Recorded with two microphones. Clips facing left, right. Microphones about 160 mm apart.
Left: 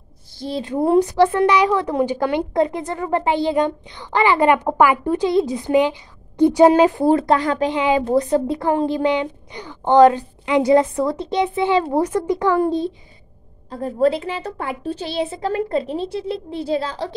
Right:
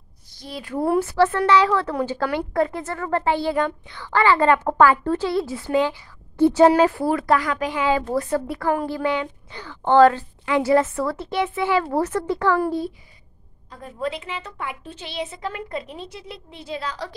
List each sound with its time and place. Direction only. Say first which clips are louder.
0.3 s a woman's voice: left 7 dB; 30° left (ahead or behind)
13.7 s a child's voice: left 11 dB; 35° left (ahead or behind)